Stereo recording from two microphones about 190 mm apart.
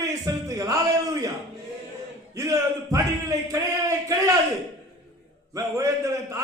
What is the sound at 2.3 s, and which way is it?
A man's voice, 15° right (ahead or behind).